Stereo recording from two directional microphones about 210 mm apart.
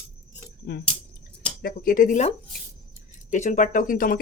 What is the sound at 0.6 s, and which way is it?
Speech, 50° left (ahead or behind).